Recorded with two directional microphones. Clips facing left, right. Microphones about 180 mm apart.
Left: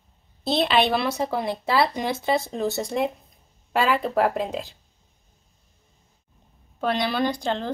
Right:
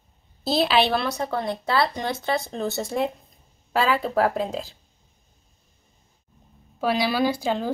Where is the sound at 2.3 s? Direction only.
Centre (ahead or behind).